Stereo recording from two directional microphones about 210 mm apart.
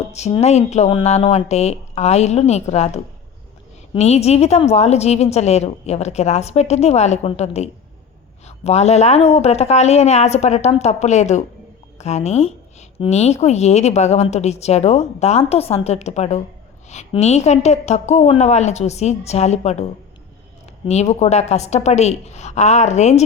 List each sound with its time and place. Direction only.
0.1 s speech: 30° left (ahead or behind)
20.8 s speech: 30° left (ahead or behind)